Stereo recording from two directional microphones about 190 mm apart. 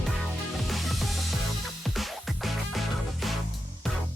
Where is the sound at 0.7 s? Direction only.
Centre (ahead or behind).